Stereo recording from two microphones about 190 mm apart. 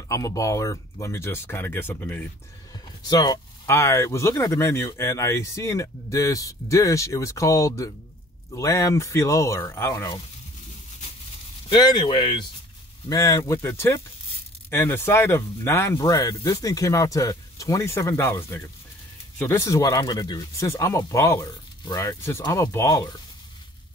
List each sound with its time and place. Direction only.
0.1 s speech: 15° left (ahead or behind)
3.1 s speech: 20° left (ahead or behind)
11.7 s speech: 25° left (ahead or behind)